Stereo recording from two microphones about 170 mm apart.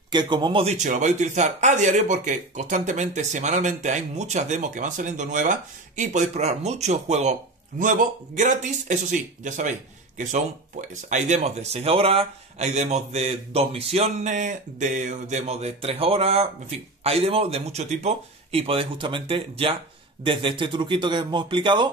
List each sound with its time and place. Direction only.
0.1 s a man's voice: 25° right (ahead or behind)